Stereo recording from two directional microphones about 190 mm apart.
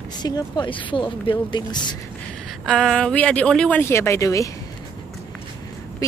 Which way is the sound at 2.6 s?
Centre (ahead or behind).